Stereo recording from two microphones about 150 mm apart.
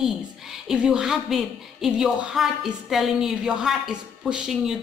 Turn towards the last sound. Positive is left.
turn(degrees=-5)  # may be behind; listen again after turning